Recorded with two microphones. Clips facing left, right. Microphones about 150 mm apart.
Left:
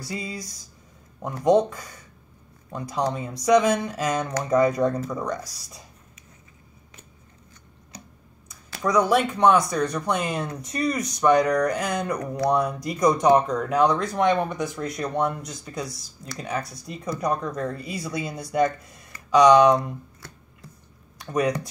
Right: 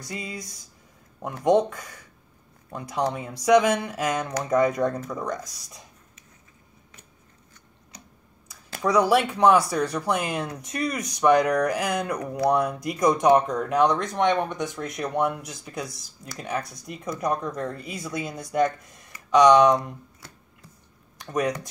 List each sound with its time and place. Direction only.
0.0 s speech: centre (ahead or behind)
8.8 s speech: 5° right (ahead or behind)
21.3 s speech: centre (ahead or behind)